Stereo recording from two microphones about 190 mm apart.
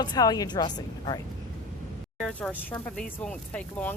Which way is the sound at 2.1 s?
5° left (ahead or behind).